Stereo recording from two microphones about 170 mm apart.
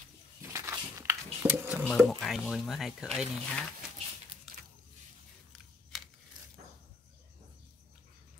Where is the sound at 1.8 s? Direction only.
Centre (ahead or behind).